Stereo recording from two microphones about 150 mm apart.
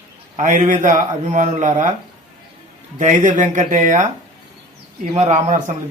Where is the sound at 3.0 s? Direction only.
55° right (ahead or behind).